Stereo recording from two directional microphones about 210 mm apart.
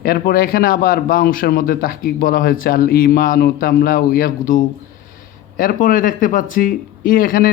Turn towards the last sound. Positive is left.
turn(degrees=45)  # may be behind; listen again after turning